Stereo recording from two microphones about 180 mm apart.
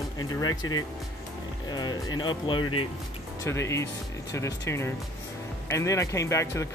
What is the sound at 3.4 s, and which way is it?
Speech, 15° left (ahead or behind).